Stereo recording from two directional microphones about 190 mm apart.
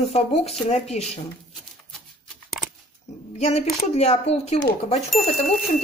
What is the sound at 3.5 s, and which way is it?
A woman's voice, 35° left (ahead or behind).